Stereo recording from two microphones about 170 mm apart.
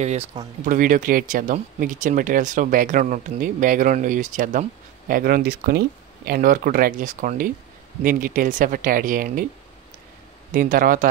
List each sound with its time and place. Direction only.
0.0 s speech: 40° right (ahead or behind)
0.7 s speech: 50° right (ahead or behind)
10.5 s speech: 55° right (ahead or behind)